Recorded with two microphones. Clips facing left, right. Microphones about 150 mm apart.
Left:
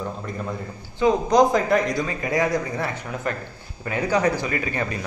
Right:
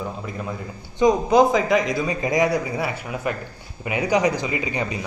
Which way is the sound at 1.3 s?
Centre (ahead or behind).